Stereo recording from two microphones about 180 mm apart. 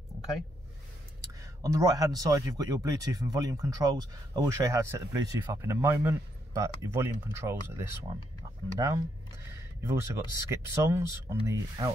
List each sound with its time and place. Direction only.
1.4 s speech: 15° right (ahead or behind)